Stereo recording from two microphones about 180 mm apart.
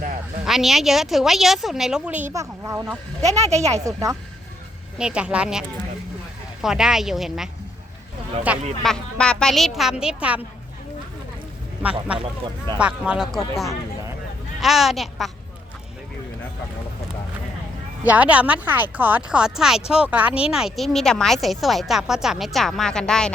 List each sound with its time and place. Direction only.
0.4 s speech: centre (ahead or behind); by 2.8 s 15° right (ahead or behind)
3.4 s speech: 35° right (ahead or behind)
3.8 s speech: 15° right (ahead or behind)
4.9 s speech: 5° right (ahead or behind)
8.8 s speech: 5° left (ahead or behind)
11.8 s speech: 5° right (ahead or behind)
12.2 s speech: 25° right (ahead or behind)
12.8 s speech: 5° right (ahead or behind)
14.6 s speech: centre (ahead or behind)
18.0 s speech: 10° right (ahead or behind)